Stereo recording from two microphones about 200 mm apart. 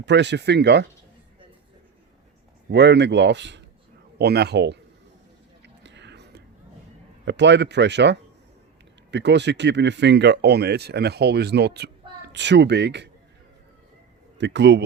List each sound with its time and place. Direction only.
0.0 s speech: 60° right (ahead or behind)
2.6 s speech: 60° right (ahead or behind)
5.6 s a sound: 60° right (ahead or behind)
7.3 s speech: 60° right (ahead or behind)
14.3 s speech: 60° right (ahead or behind)